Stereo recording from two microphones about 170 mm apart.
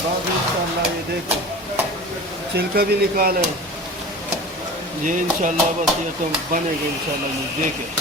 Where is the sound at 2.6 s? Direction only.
65° right (ahead or behind).